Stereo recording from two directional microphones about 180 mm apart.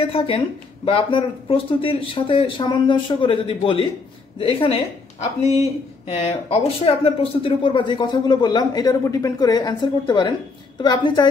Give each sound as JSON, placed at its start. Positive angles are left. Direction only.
{"t": 0.0, "sound": "a woman's voice", "side_deg": 30}